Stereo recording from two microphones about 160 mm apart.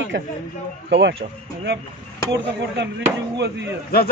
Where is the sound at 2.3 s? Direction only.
90° right.